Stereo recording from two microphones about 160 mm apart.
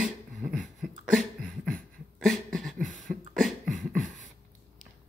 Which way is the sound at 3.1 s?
Centre (ahead or behind).